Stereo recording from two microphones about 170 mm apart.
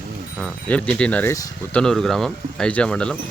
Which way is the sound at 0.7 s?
5° left (ahead or behind).